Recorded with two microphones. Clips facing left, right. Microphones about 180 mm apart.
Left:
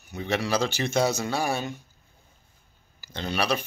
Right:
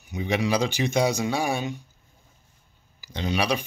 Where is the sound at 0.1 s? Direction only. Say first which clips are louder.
Right 2 dB; 15° right (ahead or behind).